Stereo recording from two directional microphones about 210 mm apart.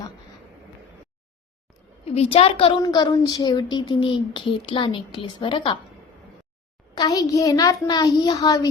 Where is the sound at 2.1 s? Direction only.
30° left (ahead or behind).